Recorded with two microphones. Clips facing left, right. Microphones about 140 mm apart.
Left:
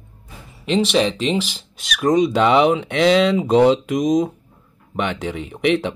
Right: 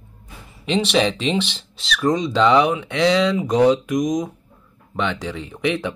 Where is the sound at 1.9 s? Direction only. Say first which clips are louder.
Left 3 dB; 20° left (ahead or behind).